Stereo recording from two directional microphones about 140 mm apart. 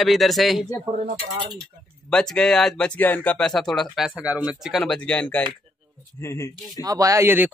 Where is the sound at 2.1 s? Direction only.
5° left (ahead or behind).